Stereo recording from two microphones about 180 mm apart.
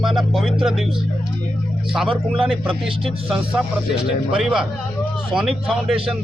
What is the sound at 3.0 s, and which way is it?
Speech, centre (ahead or behind).